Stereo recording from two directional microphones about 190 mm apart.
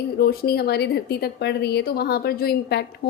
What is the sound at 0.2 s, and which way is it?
Speech, 55° left (ahead or behind).